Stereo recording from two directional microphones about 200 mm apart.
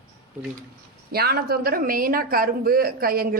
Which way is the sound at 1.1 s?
50° right (ahead or behind).